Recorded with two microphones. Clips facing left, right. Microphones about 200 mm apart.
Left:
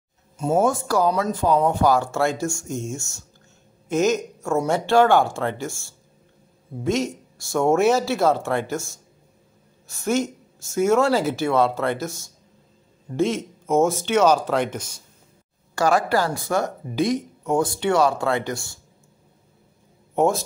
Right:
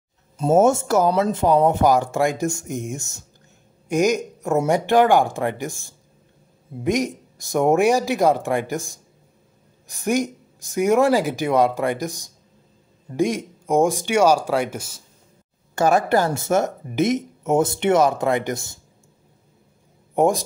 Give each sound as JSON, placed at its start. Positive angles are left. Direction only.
{"t": 0.6, "sound": "speech", "side_deg": -25}
{"t": 15.7, "sound": "speech", "side_deg": -20}
{"t": 20.2, "sound": "speech", "side_deg": -15}